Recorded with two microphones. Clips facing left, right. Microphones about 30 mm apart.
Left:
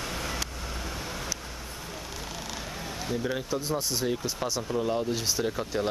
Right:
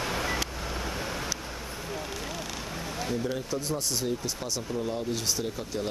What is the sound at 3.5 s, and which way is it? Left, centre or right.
Speech, centre.